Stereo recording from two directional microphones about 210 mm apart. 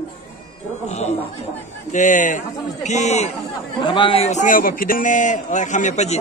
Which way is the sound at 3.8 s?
25° left (ahead or behind).